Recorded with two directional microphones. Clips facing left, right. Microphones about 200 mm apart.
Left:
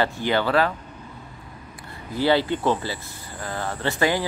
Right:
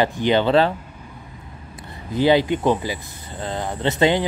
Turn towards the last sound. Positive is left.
turn(degrees=-20)  # may be behind; listen again after turning